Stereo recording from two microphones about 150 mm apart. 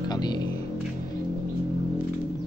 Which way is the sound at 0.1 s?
25° left (ahead or behind).